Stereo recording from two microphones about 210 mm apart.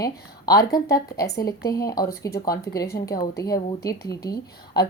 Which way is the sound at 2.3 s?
50° left (ahead or behind).